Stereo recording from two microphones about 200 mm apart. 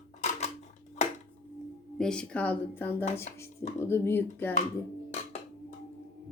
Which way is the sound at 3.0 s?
30° left (ahead or behind).